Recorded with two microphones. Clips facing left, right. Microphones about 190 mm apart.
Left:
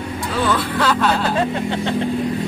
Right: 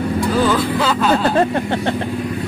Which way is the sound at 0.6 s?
5° right (ahead or behind).